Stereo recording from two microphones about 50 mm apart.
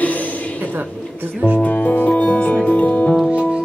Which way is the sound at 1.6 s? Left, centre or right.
Left.